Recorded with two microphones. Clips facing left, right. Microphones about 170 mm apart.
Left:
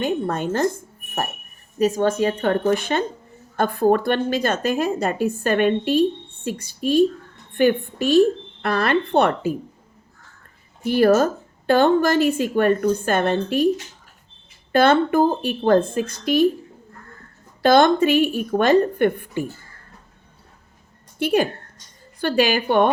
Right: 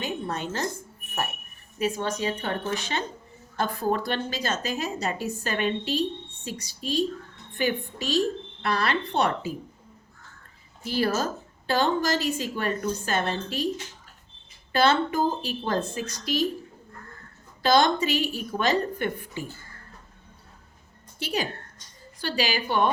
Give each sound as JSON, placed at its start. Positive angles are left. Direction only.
{"t": 0.0, "sound": "a woman's voice", "side_deg": 50}
{"t": 1.8, "sound": "a woman's voice", "side_deg": 45}
{"t": 10.8, "sound": "a woman's voice", "side_deg": 55}
{"t": 14.7, "sound": "a woman's voice", "side_deg": 55}
{"t": 17.6, "sound": "a woman's voice", "side_deg": 55}
{"t": 21.2, "sound": "a woman's voice", "side_deg": 55}